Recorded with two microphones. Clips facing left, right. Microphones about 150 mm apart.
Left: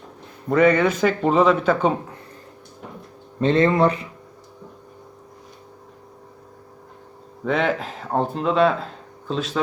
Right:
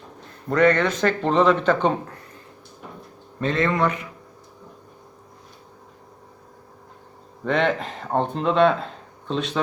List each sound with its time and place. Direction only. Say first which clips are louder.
0.4 s speech: left 2 dB; 5° left (ahead or behind)
3.4 s speech: left 5 dB; 25° left (ahead or behind)
7.4 s speech: even; 5° left (ahead or behind)